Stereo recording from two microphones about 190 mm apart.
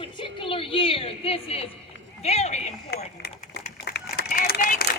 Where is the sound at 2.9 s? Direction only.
55° left (ahead or behind).